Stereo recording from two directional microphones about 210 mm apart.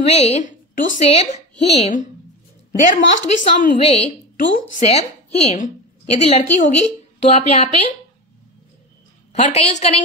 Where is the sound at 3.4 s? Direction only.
35° left (ahead or behind).